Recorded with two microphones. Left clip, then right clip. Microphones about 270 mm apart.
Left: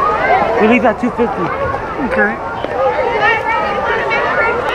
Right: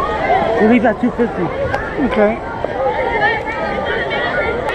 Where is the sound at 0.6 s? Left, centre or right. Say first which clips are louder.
Left 2 dB; centre.